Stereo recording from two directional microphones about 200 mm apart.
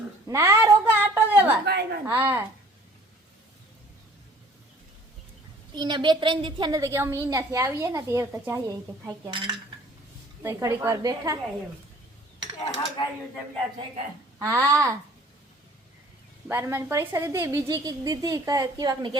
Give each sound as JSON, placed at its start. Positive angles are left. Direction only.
{"t": 0.3, "sound": "a sound", "side_deg": -15}
{"t": 1.6, "sound": "a sound", "side_deg": -55}
{"t": 2.0, "sound": "a woman's voice", "side_deg": -10}
{"t": 5.7, "sound": "a woman's voice", "side_deg": -20}
{"t": 10.4, "sound": "a woman's voice", "side_deg": -10}
{"t": 13.7, "sound": "speech", "side_deg": -25}
{"t": 14.4, "sound": "a woman's voice", "side_deg": -15}
{"t": 16.5, "sound": "a woman's voice", "side_deg": -15}